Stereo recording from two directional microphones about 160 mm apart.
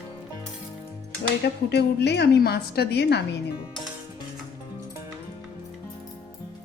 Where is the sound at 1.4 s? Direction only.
90° left.